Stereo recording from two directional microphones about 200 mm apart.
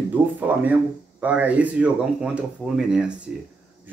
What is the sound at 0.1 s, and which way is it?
Speech, 10° right (ahead or behind).